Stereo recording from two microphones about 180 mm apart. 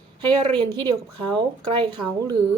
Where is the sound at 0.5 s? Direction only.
25° right (ahead or behind).